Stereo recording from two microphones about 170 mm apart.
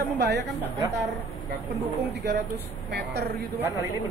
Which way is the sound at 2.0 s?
75° right (ahead or behind).